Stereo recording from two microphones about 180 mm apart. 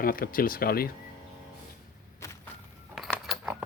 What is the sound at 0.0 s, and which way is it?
Speech, 55° left (ahead or behind).